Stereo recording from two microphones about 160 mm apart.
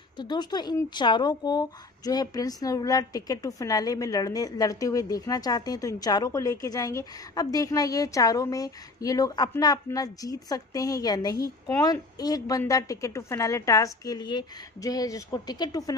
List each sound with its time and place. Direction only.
0.2 s speech: 25° left (ahead or behind)